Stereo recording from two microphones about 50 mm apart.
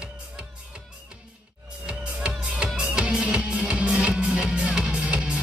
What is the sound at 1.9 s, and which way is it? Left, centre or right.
Music, centre.